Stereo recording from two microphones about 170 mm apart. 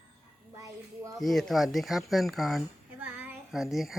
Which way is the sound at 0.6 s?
20° right (ahead or behind).